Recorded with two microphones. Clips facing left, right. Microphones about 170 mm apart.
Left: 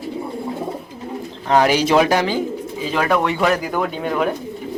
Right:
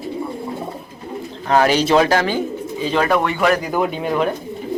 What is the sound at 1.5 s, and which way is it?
Speech, 15° left (ahead or behind).